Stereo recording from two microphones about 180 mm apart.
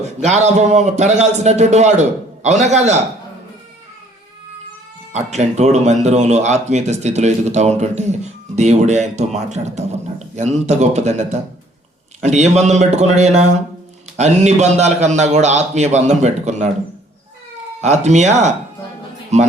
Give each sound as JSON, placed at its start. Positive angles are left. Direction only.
{"t": 0.0, "sound": "speech", "side_deg": -40}
{"t": 5.1, "sound": "speech", "side_deg": -40}
{"t": 17.7, "sound": "speech", "side_deg": -40}